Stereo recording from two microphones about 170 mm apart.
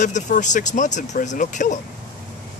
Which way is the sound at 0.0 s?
45° left (ahead or behind).